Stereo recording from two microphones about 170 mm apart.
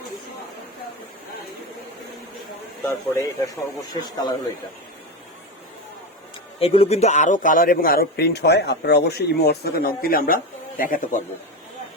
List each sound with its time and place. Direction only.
2.8 s speech: 20° left (ahead or behind)
6.6 s a man's voice: 35° left (ahead or behind); by 11.2 s 55° left (ahead or behind)